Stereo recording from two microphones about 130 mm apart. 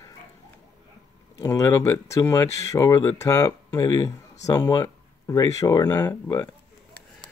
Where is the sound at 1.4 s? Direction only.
25° left (ahead or behind).